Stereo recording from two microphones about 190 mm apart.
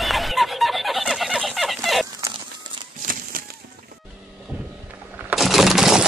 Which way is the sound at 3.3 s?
50° right (ahead or behind).